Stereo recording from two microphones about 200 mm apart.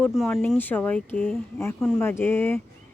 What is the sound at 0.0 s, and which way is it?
Speech, 5° left (ahead or behind).